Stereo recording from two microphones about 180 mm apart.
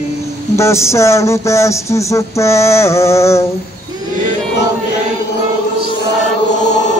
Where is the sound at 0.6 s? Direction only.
15° left (ahead or behind).